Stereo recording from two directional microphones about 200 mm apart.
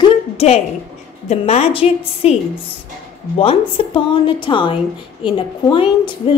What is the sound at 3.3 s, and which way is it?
A woman's voice, 25° left (ahead or behind).